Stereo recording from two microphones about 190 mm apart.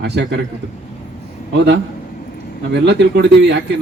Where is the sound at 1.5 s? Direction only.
65° right (ahead or behind).